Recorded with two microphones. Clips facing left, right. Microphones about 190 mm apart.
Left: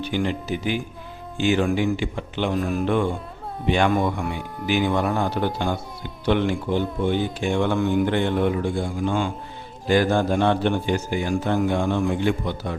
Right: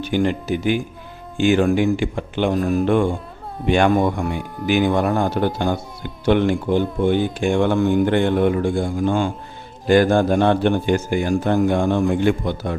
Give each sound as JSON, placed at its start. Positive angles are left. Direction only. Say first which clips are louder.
{"t": 0.0, "sound": "speech", "louder": "right 5 dB", "side_deg": -50}